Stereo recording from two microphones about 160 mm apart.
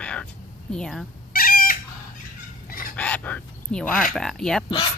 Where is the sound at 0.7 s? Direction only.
5° left (ahead or behind).